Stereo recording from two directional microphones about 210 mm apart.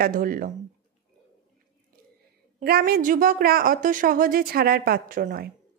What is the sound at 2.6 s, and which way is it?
A woman's voice, 45° right (ahead or behind).